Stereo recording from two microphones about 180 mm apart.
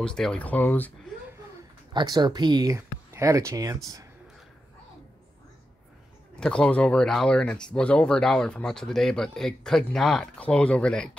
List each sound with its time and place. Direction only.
0.0 s speech: 5° left (ahead or behind)
2.0 s speech: 20° right (ahead or behind)
6.4 s speech: 5° left (ahead or behind)